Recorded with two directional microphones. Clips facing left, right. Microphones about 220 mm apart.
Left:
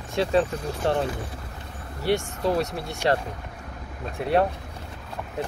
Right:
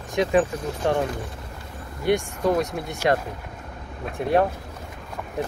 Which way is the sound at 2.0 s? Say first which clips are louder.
Right 2 dB; 15° right (ahead or behind).